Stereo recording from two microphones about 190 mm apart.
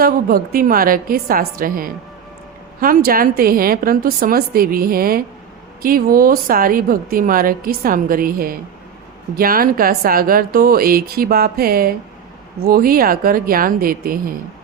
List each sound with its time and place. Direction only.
0.0 s a woman's voice: 50° right (ahead or behind)